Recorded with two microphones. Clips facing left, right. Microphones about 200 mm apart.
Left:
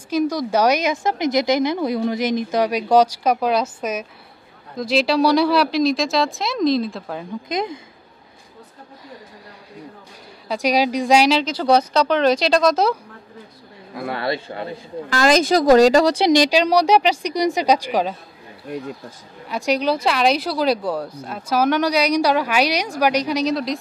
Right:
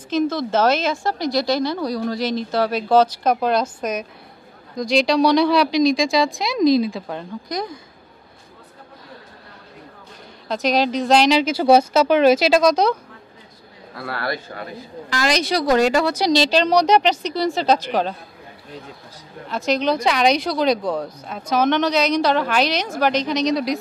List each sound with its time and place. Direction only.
0.1 s speech: 10° left (ahead or behind)
7.4 s speech: 25° left (ahead or behind)
10.5 s speech: 10° left (ahead or behind)
11.3 s speech: 10° right (ahead or behind)
13.9 s speech: 20° left (ahead or behind)
15.0 s a woman's voice: 45° left (ahead or behind)
16.3 s speech: 15° left (ahead or behind)
19.5 s speech: 10° left (ahead or behind)